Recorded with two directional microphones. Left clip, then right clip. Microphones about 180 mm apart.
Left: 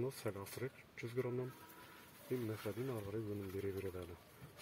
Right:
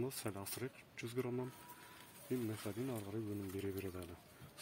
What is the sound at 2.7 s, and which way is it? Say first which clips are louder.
Speech: left 1 dB; 50° right (ahead or behind).